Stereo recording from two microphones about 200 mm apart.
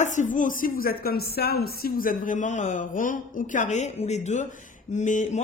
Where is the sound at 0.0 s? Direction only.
40° left (ahead or behind).